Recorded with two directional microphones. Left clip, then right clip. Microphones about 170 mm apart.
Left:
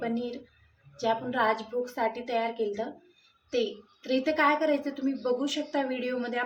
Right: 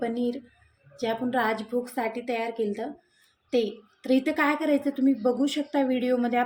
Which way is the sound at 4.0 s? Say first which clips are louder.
Right 1 dB; 40° right (ahead or behind).